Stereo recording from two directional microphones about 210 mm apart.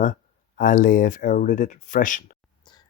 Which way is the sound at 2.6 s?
20° left (ahead or behind).